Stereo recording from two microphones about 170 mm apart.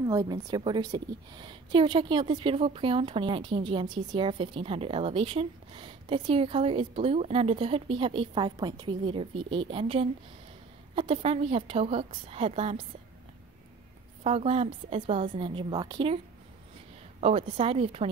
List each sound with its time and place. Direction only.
0.0 s a woman's voice: 20° right (ahead or behind)
14.2 s a woman's voice: 35° right (ahead or behind)
17.2 s speech: 35° right (ahead or behind)